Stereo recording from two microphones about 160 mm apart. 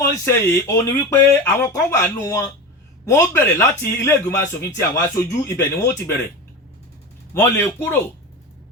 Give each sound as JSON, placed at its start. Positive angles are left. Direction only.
{"t": 0.3, "sound": "a man's voice", "side_deg": 15}
{"t": 7.3, "sound": "a man's voice", "side_deg": 15}